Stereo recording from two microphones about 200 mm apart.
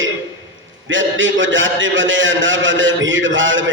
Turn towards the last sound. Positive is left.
turn(degrees=-70)  # may be behind; listen again after turning